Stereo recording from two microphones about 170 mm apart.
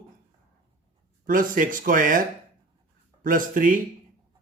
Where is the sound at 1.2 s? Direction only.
55° right (ahead or behind).